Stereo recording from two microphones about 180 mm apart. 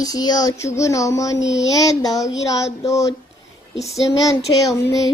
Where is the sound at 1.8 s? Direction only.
20° left (ahead or behind).